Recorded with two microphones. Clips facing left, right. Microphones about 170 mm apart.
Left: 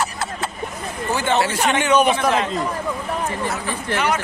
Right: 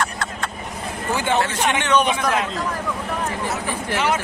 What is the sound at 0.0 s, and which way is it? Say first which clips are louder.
Vehicle: left 1 dB; 5° left (ahead or behind).